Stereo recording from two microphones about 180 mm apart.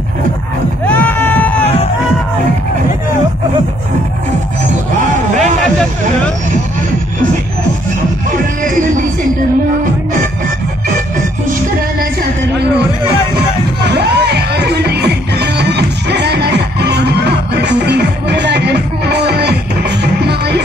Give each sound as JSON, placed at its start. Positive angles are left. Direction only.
{"t": 0.8, "sound": "music", "side_deg": 10}
{"t": 5.4, "sound": "music", "side_deg": 5}
{"t": 13.8, "sound": "music", "side_deg": -65}